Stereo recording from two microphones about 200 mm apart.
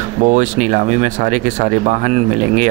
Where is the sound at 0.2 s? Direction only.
35° right (ahead or behind).